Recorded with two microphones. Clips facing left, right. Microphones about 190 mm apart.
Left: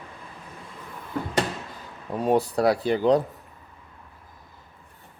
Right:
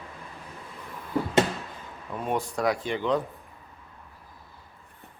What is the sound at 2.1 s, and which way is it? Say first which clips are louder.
Speech: left 7 dB; 35° left (ahead or behind).